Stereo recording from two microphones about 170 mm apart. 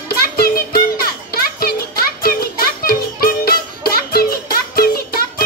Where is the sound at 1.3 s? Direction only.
60° left (ahead or behind).